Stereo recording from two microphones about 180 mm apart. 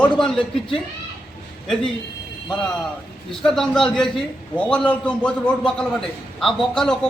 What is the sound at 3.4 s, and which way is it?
A man's voice, centre (ahead or behind).